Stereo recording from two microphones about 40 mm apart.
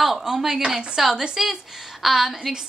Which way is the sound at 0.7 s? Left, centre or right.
Centre.